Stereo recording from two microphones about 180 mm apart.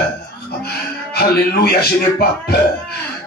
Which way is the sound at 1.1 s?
65° left (ahead or behind).